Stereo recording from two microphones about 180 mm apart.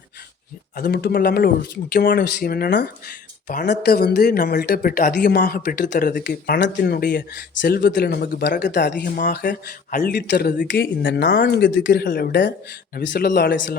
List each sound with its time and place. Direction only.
0.8 s speech: 55° left (ahead or behind)
3.4 s speech: 50° left (ahead or behind)
3.7 s speech: 65° left (ahead or behind)
5.9 s speech: 50° left (ahead or behind)
7.2 s speech: 75° left (ahead or behind)
9.0 s speech: 50° left (ahead or behind)